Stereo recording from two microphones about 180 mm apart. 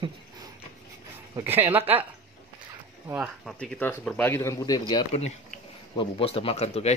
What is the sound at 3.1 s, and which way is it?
Speech, 5° right (ahead or behind).